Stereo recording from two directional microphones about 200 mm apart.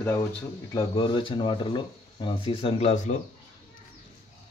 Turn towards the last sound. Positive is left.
turn(degrees=35)  # may be behind; listen again after turning